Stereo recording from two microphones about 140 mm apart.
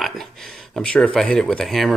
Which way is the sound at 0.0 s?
Centre (ahead or behind).